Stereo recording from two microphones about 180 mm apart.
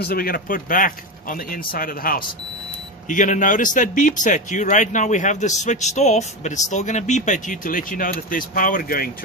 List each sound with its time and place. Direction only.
0.0 s speech: 55° left (ahead or behind)